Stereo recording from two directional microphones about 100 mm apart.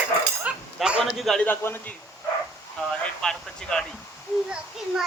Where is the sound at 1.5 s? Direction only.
20° left (ahead or behind).